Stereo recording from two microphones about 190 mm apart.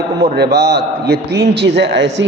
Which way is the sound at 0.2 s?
60° right (ahead or behind).